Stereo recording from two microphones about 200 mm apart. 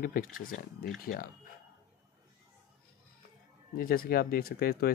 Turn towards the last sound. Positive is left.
turn(degrees=50)  # may be behind; listen again after turning